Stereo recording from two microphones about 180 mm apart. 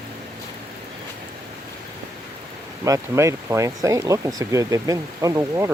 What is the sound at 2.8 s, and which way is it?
Speech, 15° right (ahead or behind).